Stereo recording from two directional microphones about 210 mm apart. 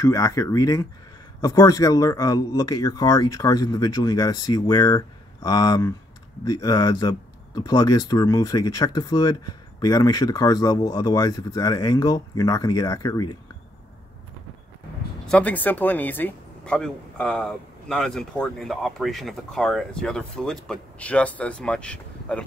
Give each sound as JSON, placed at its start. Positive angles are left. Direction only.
{"t": 0.0, "sound": "speech", "side_deg": 15}
{"t": 15.2, "sound": "speech", "side_deg": 5}